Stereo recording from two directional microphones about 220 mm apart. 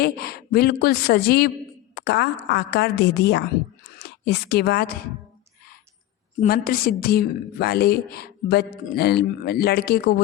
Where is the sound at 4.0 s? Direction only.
45° left (ahead or behind).